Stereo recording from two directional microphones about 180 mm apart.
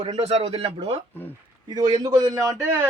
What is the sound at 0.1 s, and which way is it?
Speech, 35° right (ahead or behind).